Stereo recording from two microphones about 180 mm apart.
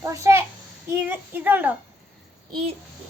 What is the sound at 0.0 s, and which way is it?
A child's voice, 15° right (ahead or behind).